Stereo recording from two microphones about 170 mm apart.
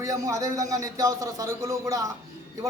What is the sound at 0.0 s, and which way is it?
A man's voice, 20° right (ahead or behind).